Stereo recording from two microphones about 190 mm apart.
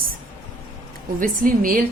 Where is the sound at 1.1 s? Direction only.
45° right (ahead or behind).